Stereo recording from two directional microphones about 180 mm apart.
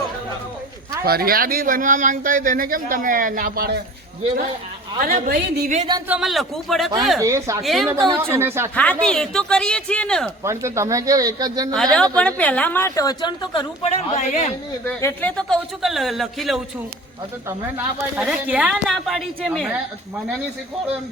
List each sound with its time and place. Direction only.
1.0 s speech: 55° right (ahead or behind)
4.9 s speech: 50° right (ahead or behind)
6.1 s speech: centre (ahead or behind)
7.2 s a woman's voice: 15° right (ahead or behind)
7.6 s speech: centre (ahead or behind)
8.3 s a woman's voice: 15° right (ahead or behind)
8.7 s speech: 10° left (ahead or behind)
10.4 s speech: 15° right (ahead or behind)
11.7 s a woman's voice: 5° left (ahead or behind); by 14.5 s 40° left (ahead or behind)
14.8 s speech: 10° left (ahead or behind)
18.2 s speech: 5° right (ahead or behind)